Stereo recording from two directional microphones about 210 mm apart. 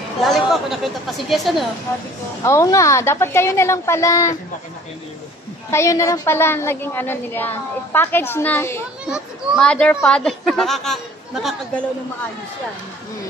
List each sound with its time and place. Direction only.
0.2 s a child's voice: centre (ahead or behind)
2.4 s a woman's voice: 15° left (ahead or behind)
5.7 s a woman's voice: 15° left (ahead or behind)
9.1 s a child's voice: centre (ahead or behind)